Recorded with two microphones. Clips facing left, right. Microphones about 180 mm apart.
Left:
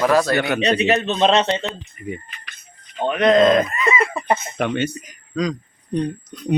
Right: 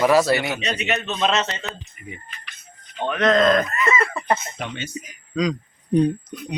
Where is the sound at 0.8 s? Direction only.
35° left (ahead or behind).